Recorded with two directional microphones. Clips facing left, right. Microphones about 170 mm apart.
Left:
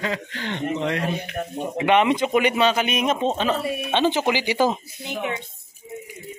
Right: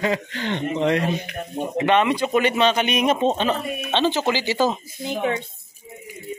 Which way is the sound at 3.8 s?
10° left (ahead or behind).